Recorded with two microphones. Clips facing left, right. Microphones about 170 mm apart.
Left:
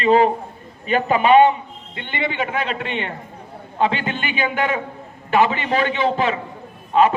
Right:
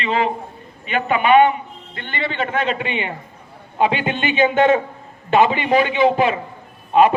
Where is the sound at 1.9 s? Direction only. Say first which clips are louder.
Left 1 dB; 20° left (ahead or behind); by 3.1 s 5° right (ahead or behind).